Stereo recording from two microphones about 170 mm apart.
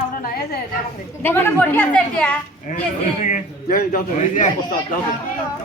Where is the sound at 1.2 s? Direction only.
15° left (ahead or behind).